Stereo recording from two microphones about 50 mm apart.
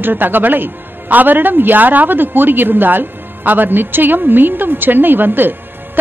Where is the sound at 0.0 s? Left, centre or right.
Right.